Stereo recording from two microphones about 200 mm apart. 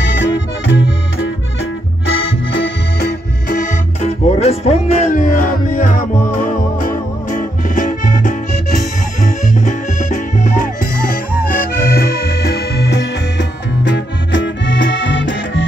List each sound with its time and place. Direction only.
0.0 s accordion: 65° left (ahead or behind); by 6.0 s 40° left (ahead or behind)
6.4 s music: 40° left (ahead or behind); by 15.6 s 65° left (ahead or behind)